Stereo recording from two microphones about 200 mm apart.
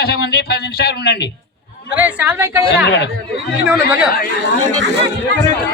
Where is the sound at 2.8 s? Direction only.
60° left (ahead or behind).